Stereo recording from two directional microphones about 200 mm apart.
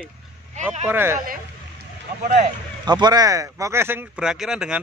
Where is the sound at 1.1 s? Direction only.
45° right (ahead or behind).